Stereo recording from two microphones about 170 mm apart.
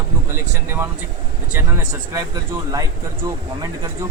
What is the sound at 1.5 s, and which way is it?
Speech, 20° right (ahead or behind).